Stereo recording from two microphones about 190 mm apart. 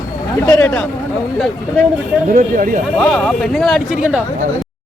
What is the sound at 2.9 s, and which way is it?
Speech, 5° left (ahead or behind).